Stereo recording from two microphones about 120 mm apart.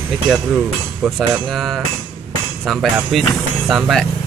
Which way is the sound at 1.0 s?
Centre (ahead or behind).